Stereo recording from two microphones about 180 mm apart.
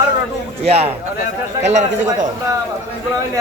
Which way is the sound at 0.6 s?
35° right (ahead or behind).